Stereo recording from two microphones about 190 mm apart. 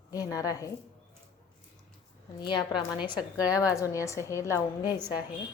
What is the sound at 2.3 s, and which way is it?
A woman's voice, 25° left (ahead or behind).